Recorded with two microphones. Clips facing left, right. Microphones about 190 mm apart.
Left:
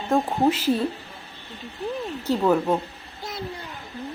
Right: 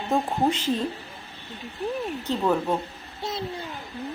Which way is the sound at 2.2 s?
10° left (ahead or behind).